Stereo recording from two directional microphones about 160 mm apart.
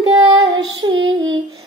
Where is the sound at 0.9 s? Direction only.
35° right (ahead or behind).